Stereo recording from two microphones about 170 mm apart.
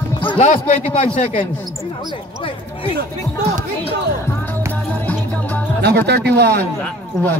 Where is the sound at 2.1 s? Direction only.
30° left (ahead or behind).